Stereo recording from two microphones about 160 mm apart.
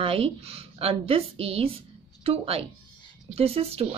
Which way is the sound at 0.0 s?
35° right (ahead or behind).